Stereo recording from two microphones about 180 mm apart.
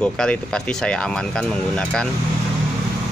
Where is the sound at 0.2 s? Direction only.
5° left (ahead or behind).